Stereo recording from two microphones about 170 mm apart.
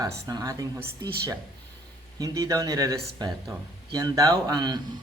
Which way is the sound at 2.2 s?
20° right (ahead or behind).